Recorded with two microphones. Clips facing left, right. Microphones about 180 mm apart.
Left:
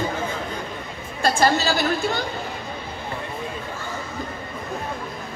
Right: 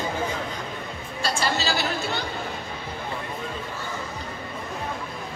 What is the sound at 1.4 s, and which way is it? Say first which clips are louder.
Speech: left 6 dB; 50° left (ahead or behind).